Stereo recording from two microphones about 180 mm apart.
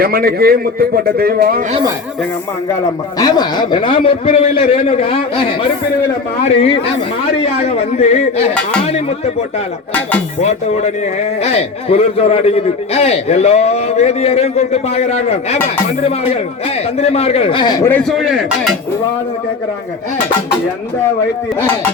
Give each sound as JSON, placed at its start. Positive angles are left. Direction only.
{"t": 0.0, "sound": "a man's voice", "side_deg": -55}
{"t": 3.2, "sound": "a man's voice", "side_deg": 20}
{"t": 10.4, "sound": "a man's voice", "side_deg": 40}
{"t": 17.8, "sound": "a man's voice", "side_deg": 10}